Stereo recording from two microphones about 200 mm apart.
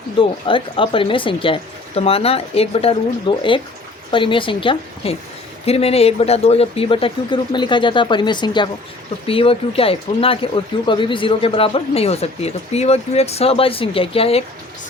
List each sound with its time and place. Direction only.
0.2 s speech: 25° left (ahead or behind)